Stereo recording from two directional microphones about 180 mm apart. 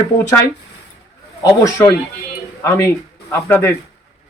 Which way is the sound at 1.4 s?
15° left (ahead or behind).